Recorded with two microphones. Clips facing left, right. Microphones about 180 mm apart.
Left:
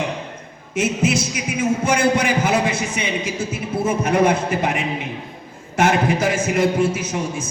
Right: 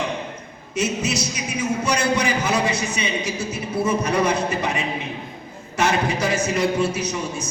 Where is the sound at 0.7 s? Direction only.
50° left (ahead or behind).